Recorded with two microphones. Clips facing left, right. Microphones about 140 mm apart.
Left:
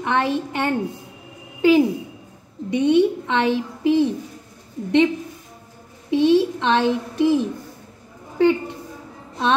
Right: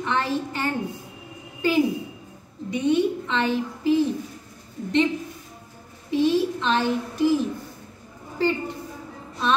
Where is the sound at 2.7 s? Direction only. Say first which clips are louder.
Left 5 dB; 70° left (ahead or behind).